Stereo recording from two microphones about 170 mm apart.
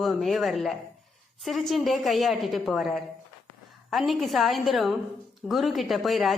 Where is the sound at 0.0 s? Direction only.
Centre (ahead or behind).